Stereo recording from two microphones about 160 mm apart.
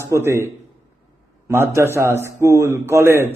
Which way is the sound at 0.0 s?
15° right (ahead or behind).